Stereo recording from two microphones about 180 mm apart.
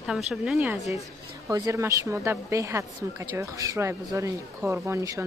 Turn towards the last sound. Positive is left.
turn(degrees=-15)  # may be behind; listen again after turning